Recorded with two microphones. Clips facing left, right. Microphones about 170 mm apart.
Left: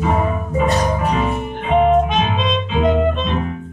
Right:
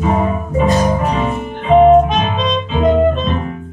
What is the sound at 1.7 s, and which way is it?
Music, 35° right (ahead or behind).